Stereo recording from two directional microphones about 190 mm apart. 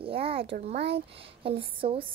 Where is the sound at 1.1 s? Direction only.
30° right (ahead or behind).